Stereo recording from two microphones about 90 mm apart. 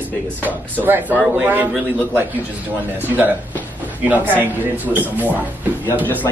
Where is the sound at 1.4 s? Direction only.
20° right (ahead or behind).